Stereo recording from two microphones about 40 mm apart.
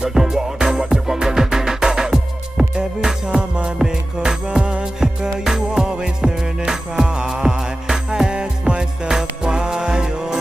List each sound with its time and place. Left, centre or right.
0.0 s music: centre